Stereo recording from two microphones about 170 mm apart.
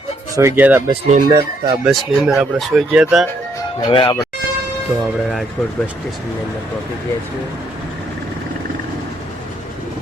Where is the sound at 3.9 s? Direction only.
25° left (ahead or behind).